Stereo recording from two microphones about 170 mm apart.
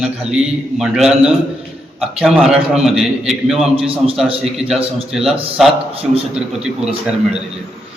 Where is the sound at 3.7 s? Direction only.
35° right (ahead or behind).